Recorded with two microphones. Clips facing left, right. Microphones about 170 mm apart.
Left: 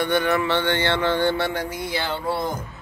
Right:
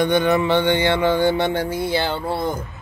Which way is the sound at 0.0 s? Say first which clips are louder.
Right 4 dB; 20° right (ahead or behind).